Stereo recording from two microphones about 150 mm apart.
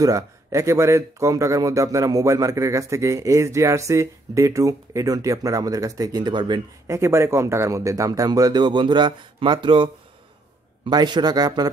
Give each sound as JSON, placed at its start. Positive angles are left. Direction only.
{"t": 0.0, "sound": "speech", "side_deg": -20}
{"t": 6.9, "sound": "speech", "side_deg": -20}
{"t": 10.9, "sound": "speech", "side_deg": -30}